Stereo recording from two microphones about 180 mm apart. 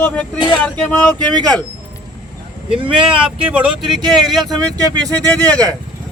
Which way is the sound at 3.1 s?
5° right (ahead or behind).